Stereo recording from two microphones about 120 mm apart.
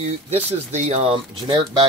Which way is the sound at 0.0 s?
60° right (ahead or behind).